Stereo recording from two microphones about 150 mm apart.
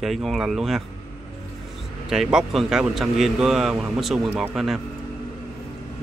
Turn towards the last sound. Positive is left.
turn(degrees=0)  # may be behind; listen again after turning